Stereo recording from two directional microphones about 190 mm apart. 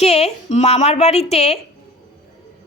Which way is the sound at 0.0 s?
35° left (ahead or behind).